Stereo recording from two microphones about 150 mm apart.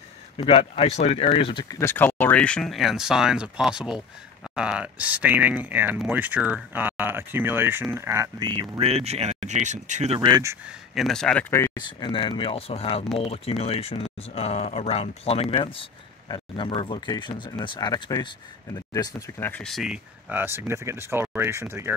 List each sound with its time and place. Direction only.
0.5 s speech: 40° left (ahead or behind); by 8.8 s 30° right (ahead or behind)
8.8 s speech: 45° right (ahead or behind)
10.1 s speech: 30° right (ahead or behind)
11.0 s speech: centre (ahead or behind)
11.7 s speech: 30° left (ahead or behind)
19.5 s speech: centre (ahead or behind); by 21.9 s 15° right (ahead or behind)